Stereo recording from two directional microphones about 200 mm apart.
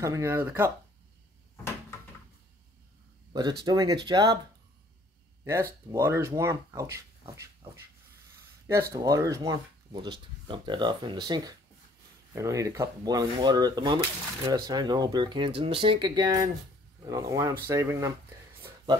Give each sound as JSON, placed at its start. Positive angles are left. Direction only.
{"t": 0.0, "sound": "speech", "side_deg": -15}
{"t": 3.6, "sound": "speech", "side_deg": -20}
{"t": 5.4, "sound": "speech", "side_deg": -10}